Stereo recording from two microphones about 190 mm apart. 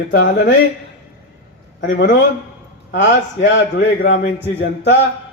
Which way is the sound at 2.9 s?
70° left (ahead or behind).